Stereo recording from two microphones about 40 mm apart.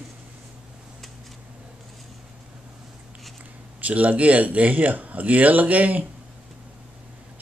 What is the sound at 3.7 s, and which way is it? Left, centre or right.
Speech, right.